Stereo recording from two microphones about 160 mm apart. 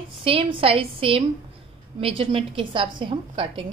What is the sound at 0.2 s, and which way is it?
A woman's voice, 35° right (ahead or behind).